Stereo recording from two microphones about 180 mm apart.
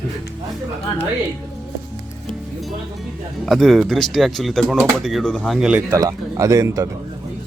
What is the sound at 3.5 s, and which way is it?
Speech, centre (ahead or behind).